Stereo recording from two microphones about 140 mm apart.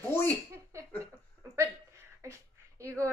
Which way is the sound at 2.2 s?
20° right (ahead or behind).